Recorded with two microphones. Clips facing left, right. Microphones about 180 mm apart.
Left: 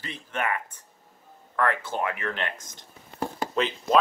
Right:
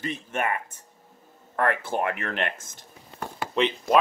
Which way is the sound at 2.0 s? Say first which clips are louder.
Right 2 dB; 50° right (ahead or behind).